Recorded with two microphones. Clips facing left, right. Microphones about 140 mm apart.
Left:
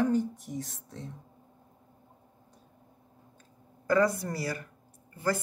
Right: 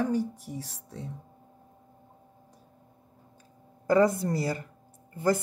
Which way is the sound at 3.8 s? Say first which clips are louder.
Right 3 dB; 20° right (ahead or behind).